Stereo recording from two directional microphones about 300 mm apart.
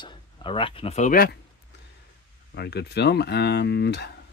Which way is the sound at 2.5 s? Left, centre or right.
Left.